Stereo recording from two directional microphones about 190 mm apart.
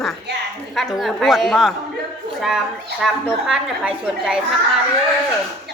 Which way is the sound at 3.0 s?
5° right (ahead or behind).